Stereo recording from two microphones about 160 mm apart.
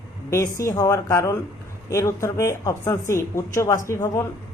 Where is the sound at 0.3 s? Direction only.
20° left (ahead or behind).